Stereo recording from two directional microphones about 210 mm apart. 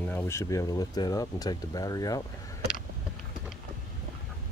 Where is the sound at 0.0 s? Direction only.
10° left (ahead or behind).